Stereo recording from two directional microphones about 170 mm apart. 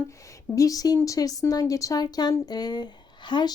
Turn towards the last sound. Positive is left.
turn(degrees=25)  # may be behind; listen again after turning